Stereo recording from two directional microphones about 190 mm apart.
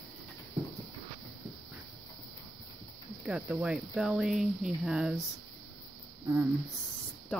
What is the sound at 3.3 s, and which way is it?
Speech, 5° right (ahead or behind).